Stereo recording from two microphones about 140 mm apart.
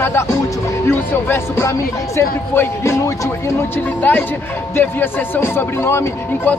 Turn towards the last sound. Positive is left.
turn(degrees=15)  # may be behind; listen again after turning